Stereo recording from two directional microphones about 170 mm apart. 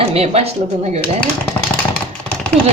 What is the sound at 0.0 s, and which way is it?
Speech, 35° right (ahead or behind).